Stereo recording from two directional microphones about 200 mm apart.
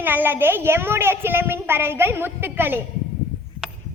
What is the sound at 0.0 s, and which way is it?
A woman's voice, 10° right (ahead or behind).